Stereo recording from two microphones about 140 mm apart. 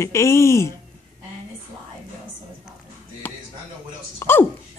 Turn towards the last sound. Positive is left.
turn(degrees=15)  # may be behind; listen again after turning